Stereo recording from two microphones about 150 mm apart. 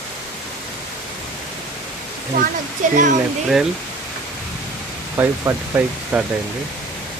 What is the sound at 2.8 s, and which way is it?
Speech, 55° right (ahead or behind).